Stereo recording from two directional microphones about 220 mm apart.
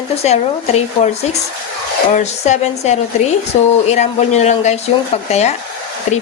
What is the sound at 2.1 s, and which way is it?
Speech, 30° left (ahead or behind).